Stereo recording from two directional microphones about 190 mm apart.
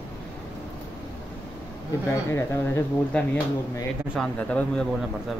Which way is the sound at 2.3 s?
15° left (ahead or behind).